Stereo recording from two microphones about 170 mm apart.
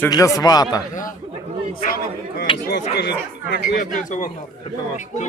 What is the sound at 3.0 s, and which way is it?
Speech, 75° left (ahead or behind).